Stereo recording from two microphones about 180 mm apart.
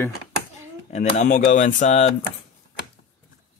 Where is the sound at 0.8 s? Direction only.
40° left (ahead or behind).